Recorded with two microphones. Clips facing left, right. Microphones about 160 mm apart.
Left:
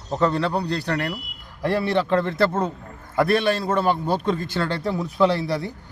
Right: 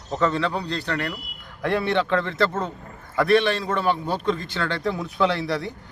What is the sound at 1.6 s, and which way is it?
A man's voice, 35° left (ahead or behind).